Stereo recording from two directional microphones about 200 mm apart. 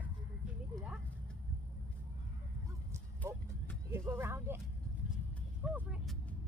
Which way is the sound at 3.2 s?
15° right (ahead or behind).